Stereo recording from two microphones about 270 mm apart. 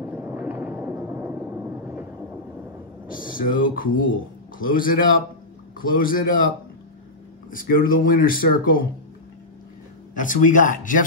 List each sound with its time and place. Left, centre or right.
0.0 s a sound: centre
3.1 s a man's voice: left
7.5 s speech: left
10.1 s speech: left